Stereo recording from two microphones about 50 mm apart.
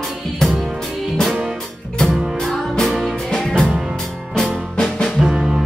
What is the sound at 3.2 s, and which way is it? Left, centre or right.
Music, centre.